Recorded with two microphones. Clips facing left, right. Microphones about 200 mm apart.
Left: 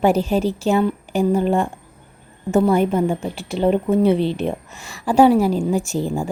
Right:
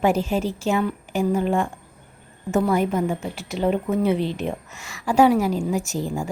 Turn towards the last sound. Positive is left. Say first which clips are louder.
# left 4 dB
turn(degrees=30)  # may be behind; listen again after turning